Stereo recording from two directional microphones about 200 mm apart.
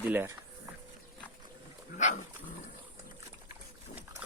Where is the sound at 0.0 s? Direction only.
10° right (ahead or behind).